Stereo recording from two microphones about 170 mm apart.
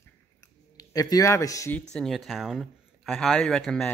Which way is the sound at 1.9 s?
Centre (ahead or behind).